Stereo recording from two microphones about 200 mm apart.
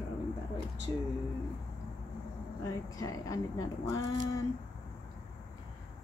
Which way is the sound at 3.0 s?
15° left (ahead or behind).